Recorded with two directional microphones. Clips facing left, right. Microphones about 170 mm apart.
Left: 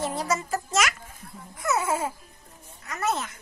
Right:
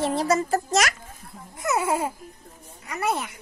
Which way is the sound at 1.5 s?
15° right (ahead or behind).